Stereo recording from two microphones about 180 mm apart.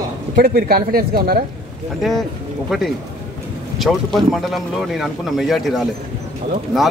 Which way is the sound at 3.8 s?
Centre (ahead or behind).